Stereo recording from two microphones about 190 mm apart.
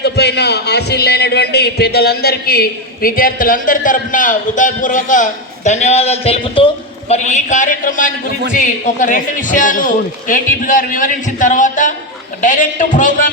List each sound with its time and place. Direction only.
0.0 s a man's voice: 60° left (ahead or behind); by 13.3 s 45° left (ahead or behind)